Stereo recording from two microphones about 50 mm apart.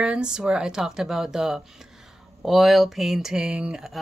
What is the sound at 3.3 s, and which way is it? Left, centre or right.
Speech, centre.